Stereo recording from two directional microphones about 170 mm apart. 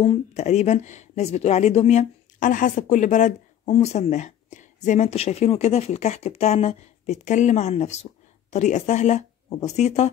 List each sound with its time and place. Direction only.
0.0 s speech: 35° left (ahead or behind)